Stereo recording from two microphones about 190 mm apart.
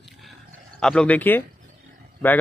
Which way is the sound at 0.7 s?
5° left (ahead or behind).